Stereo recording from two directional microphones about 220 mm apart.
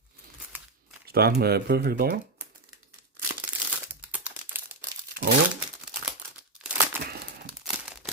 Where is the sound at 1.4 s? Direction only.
45° right (ahead or behind).